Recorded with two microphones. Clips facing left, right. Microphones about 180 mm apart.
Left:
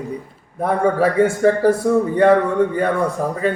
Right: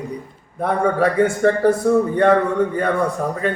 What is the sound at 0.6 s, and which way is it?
A man's voice, 5° left (ahead or behind).